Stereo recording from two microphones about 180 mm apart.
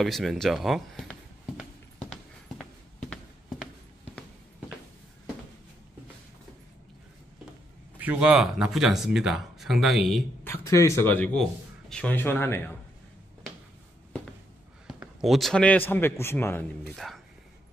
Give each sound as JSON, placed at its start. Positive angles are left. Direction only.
{"t": 0.0, "sound": "speech", "side_deg": 0}
{"t": 8.0, "sound": "speech", "side_deg": -10}
{"t": 10.4, "sound": "a man's voice", "side_deg": 15}
{"t": 14.9, "sound": "a man's voice", "side_deg": 0}
{"t": 16.9, "sound": "speech", "side_deg": 0}